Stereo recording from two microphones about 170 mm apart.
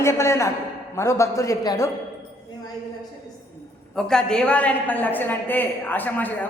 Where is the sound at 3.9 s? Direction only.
5° left (ahead or behind).